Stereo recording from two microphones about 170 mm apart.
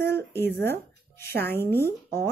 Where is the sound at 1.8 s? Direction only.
15° left (ahead or behind).